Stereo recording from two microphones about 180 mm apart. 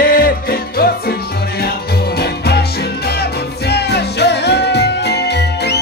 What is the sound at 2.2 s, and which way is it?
Music, 65° left (ahead or behind).